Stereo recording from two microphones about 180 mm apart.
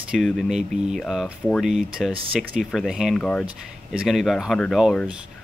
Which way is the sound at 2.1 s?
30° right (ahead or behind).